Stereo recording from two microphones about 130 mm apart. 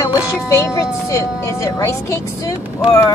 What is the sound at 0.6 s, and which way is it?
A woman's voice, 25° left (ahead or behind).